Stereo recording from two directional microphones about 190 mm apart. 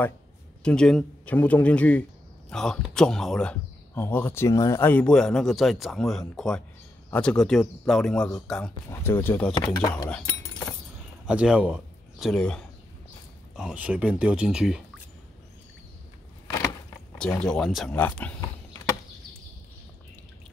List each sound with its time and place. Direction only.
0.7 s speech: 5° left (ahead or behind)
10.0 s speech: 10° left (ahead or behind)
11.2 s speech: 5° right (ahead or behind)
13.6 s speech: 5° right (ahead or behind)
17.4 s speech: 5° left (ahead or behind)